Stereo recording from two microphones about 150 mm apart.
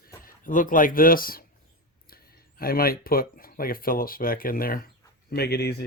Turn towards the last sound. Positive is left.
turn(degrees=90)